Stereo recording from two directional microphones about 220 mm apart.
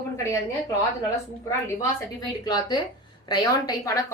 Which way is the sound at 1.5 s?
15° left (ahead or behind).